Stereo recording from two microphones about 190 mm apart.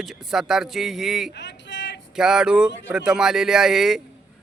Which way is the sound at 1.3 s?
70° left (ahead or behind).